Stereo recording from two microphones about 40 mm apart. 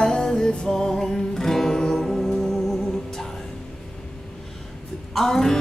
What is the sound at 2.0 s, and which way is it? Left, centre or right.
Music, centre.